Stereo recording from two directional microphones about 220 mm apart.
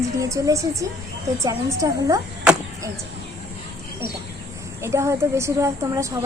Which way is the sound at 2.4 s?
5° right (ahead or behind).